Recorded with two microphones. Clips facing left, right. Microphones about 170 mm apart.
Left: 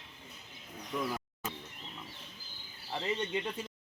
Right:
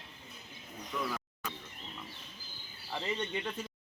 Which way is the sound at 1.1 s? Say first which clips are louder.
Left 1 dB; 25° left (ahead or behind).